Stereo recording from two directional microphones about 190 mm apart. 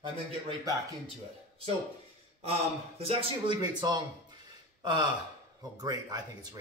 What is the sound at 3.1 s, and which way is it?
Speech, 30° right (ahead or behind).